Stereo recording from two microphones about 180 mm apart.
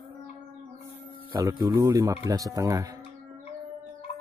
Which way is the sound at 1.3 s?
20° right (ahead or behind).